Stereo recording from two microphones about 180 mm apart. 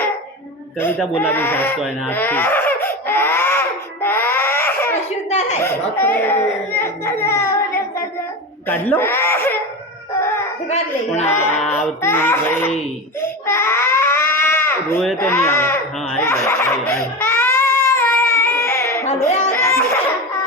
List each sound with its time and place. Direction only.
0.8 s speech: 10° left (ahead or behind)
2.0 s baby cry: 10° left (ahead or behind)
6.0 s whimper: 10° left (ahead or behind)
8.6 s speech: 10° left (ahead or behind)
10.7 s speech: 40° left (ahead or behind)
11.4 s speech: 10° left (ahead or behind)
13.2 s baby cry: 15° left (ahead or behind)
15.0 s speech: 5° left (ahead or behind)
16.2 s crying: 15° left (ahead or behind)
19.5 s a sound: 15° left (ahead or behind)